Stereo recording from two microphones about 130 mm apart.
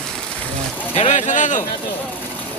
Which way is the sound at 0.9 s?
60° left (ahead or behind).